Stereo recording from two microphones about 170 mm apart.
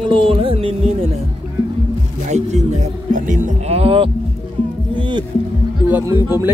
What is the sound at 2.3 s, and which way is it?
Speech, 40° right (ahead or behind).